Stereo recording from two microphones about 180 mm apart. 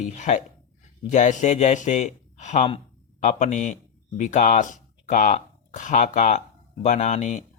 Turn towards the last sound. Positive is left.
turn(degrees=40)  # may be behind; listen again after turning